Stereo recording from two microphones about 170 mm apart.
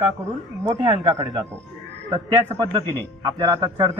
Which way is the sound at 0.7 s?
30° right (ahead or behind).